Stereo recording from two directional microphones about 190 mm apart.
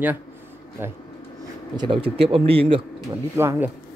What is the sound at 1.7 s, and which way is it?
Speech, 25° right (ahead or behind).